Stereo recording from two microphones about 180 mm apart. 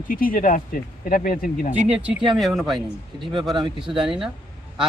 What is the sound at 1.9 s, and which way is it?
Speech, 5° right (ahead or behind).